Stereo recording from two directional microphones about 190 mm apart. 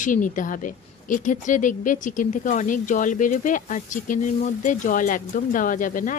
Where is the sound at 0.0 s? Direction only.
45° left (ahead or behind).